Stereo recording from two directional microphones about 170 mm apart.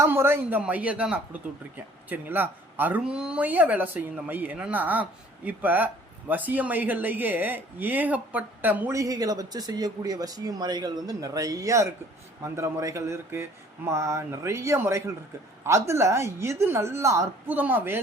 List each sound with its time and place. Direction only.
0.0 s speech: 15° right (ahead or behind)